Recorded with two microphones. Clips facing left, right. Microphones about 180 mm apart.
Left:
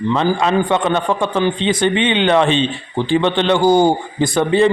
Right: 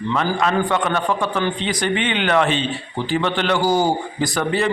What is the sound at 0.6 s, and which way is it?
A man's voice, 25° left (ahead or behind).